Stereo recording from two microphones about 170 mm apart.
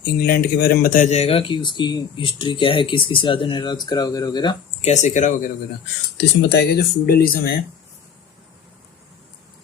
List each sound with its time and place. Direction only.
0.0 s speech: 65° left (ahead or behind); by 4.5 s 25° left (ahead or behind)
4.8 s speech: 40° left (ahead or behind)
6.1 s speech: 70° left (ahead or behind)